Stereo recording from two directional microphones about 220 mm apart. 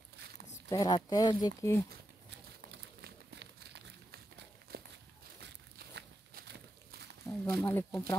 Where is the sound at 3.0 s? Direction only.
50° right (ahead or behind).